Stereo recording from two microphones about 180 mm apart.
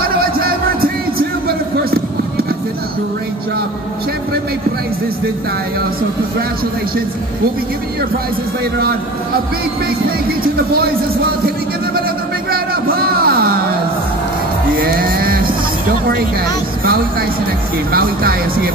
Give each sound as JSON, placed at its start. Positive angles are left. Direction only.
{"t": 0.2, "sound": "music", "side_deg": -55}
{"t": 10.4, "sound": "speech", "side_deg": -60}
{"t": 12.4, "sound": "music", "side_deg": -55}
{"t": 14.8, "sound": "music", "side_deg": -55}
{"t": 17.9, "sound": "speech", "side_deg": -55}